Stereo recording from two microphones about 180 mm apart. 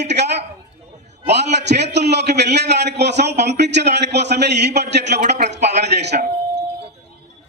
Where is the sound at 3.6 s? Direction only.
70° right (ahead or behind).